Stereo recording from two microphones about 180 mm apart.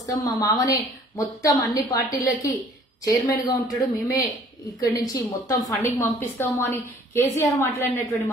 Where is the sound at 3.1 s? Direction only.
20° left (ahead or behind).